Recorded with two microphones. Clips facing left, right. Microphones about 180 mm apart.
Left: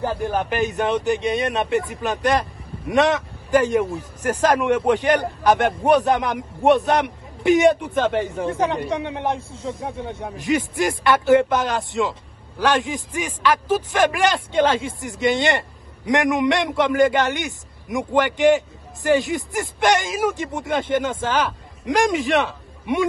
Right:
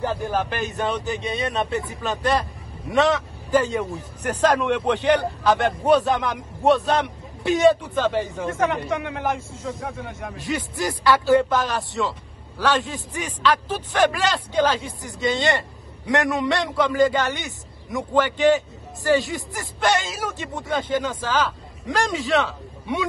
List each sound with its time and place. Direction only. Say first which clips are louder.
0.3 s speech: left 3 dB; 20° left (ahead or behind)
4.4 s a man's voice: left 1 dB; 10° left (ahead or behind)
8.4 s speech: left 1 dB; 35° left (ahead or behind)
10.3 s speech: left 7 dB; 15° left (ahead or behind)